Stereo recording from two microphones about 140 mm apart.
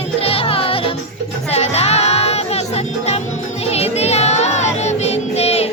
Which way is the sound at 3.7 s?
50° left (ahead or behind).